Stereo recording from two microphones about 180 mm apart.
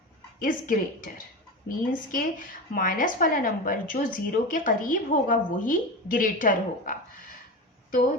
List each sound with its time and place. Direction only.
0.3 s a woman's voice: 50° left (ahead or behind)